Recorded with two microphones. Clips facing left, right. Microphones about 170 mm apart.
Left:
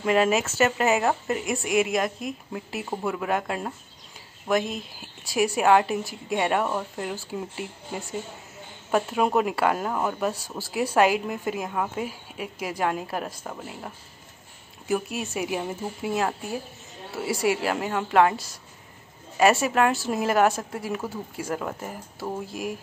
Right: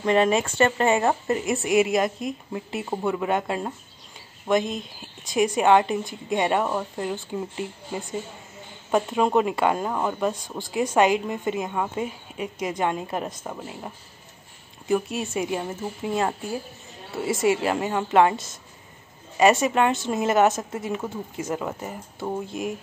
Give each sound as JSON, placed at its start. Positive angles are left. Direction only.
{"t": 0.0, "sound": "a woman's voice", "side_deg": 5}
{"t": 21.1, "sound": "speech", "side_deg": -20}
{"t": 21.5, "sound": "a woman's voice", "side_deg": -5}